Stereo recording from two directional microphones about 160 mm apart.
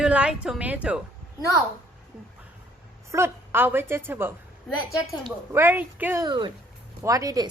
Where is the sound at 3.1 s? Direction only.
15° right (ahead or behind).